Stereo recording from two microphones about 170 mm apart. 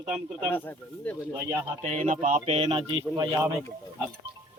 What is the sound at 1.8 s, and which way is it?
Speech, 45° right (ahead or behind).